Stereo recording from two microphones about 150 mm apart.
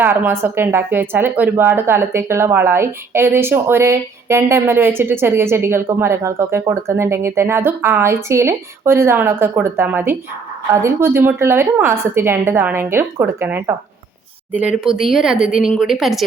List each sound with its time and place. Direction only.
0.0 s a woman's voice: 15° right (ahead or behind)
14.8 s a woman's voice: 5° right (ahead or behind)